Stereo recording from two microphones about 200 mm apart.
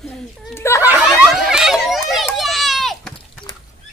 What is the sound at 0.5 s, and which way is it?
Snicker, 15° left (ahead or behind).